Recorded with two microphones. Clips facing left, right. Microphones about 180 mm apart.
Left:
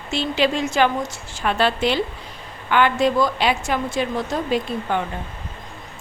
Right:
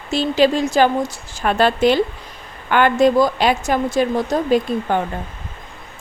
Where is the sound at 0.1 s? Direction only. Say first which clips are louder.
Right 5 dB; 40° right (ahead or behind).